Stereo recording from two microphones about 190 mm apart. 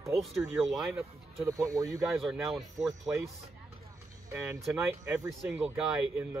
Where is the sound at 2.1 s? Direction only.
Centre (ahead or behind).